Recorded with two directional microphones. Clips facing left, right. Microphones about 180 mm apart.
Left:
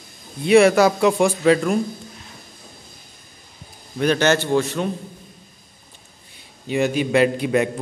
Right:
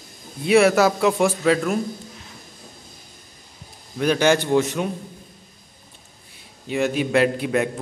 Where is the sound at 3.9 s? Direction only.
5° right (ahead or behind).